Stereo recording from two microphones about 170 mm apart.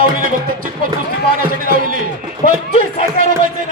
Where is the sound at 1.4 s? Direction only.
55° right (ahead or behind).